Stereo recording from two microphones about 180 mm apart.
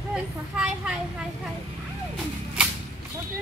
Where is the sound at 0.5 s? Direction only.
5° right (ahead or behind).